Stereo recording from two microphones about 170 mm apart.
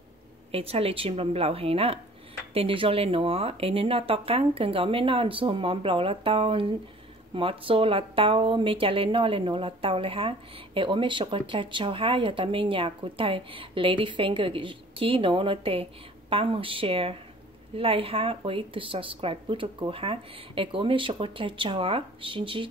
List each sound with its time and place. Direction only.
0.5 s a woman's voice: 35° right (ahead or behind)